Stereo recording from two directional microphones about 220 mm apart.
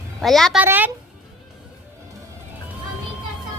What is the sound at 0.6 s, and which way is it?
Speech, 10° right (ahead or behind).